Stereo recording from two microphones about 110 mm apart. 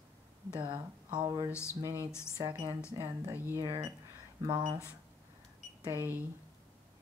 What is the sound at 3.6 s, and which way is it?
Speech, 30° right (ahead or behind).